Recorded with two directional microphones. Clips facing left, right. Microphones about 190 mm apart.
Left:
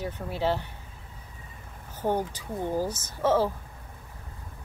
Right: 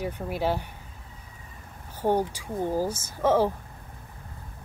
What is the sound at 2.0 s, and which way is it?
Speech, 10° right (ahead or behind).